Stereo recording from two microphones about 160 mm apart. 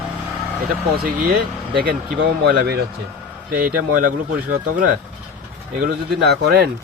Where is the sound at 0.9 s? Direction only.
80° right.